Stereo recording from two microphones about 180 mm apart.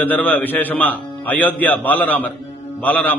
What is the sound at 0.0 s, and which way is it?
A man's voice, 10° left (ahead or behind).